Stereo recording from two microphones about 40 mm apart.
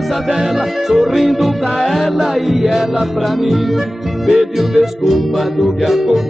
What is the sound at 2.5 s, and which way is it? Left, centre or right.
Music, centre.